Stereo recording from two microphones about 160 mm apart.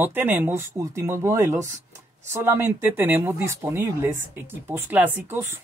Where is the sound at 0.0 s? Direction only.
15° right (ahead or behind).